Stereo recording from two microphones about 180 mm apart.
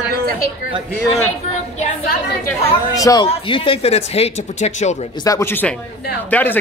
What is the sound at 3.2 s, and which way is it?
Speech, 30° left (ahead or behind).